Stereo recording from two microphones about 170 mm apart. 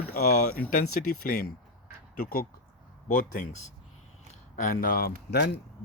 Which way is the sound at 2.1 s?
60° left (ahead or behind).